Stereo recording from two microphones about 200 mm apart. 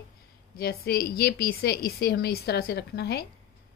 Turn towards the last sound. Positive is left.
turn(degrees=55)  # may be behind; listen again after turning